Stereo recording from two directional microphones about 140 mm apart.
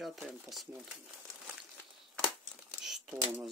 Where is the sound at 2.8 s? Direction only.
5° right (ahead or behind).